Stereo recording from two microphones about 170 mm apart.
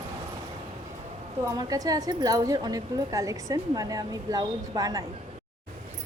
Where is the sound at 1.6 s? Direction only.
20° right (ahead or behind).